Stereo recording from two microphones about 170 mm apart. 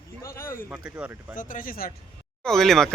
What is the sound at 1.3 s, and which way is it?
Speech, 55° left (ahead or behind).